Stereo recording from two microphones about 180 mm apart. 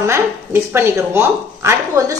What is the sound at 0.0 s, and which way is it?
A woman's voice, 15° right (ahead or behind).